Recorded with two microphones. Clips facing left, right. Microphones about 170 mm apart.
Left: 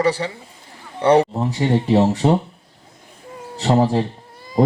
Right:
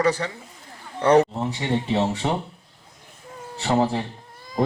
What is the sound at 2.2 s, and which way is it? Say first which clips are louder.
Speech: left 8 dB; 50° left (ahead or behind).